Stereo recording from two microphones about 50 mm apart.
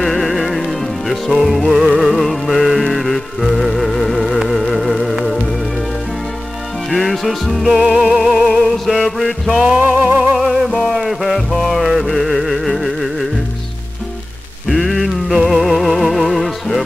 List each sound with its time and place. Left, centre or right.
0.0 s music: centre
6.9 s music: centre
7.8 s music: centre
8.5 s music: centre
9.2 s music: centre
10.3 s music: centre
14.9 s music: centre